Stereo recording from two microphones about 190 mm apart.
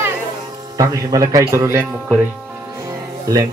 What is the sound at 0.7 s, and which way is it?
Speech, 20° right (ahead or behind).